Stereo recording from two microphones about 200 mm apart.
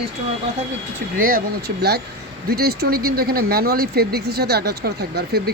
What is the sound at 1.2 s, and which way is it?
Speech, 45° right (ahead or behind).